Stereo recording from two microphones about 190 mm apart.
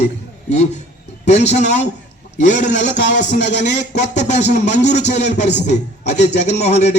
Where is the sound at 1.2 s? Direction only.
35° left (ahead or behind).